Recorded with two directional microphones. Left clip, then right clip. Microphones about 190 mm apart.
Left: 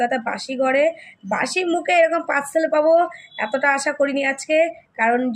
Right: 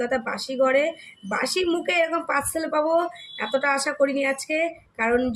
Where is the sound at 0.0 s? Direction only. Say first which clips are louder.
Left 4 dB; 20° right (ahead or behind).